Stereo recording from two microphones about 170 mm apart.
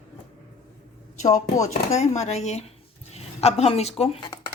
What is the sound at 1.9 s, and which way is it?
A woman's voice, 40° left (ahead or behind).